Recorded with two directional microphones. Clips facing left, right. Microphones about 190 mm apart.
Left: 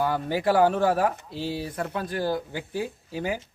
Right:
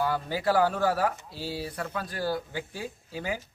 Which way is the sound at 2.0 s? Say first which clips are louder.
Left 3 dB; 20° left (ahead or behind).